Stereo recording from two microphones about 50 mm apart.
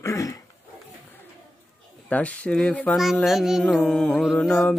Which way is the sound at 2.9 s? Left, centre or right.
Left.